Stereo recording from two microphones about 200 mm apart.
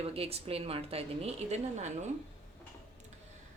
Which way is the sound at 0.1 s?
30° right (ahead or behind).